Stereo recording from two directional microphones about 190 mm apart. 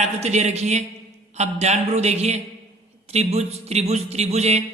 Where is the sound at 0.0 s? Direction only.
35° right (ahead or behind).